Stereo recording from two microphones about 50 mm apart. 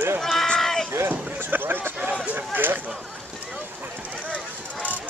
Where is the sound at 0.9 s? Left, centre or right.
Right.